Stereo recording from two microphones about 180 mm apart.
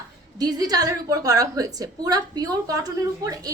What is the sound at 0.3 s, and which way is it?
A woman's voice, 20° right (ahead or behind).